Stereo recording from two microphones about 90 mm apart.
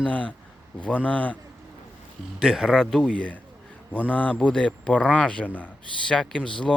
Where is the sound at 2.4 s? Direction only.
5° left (ahead or behind).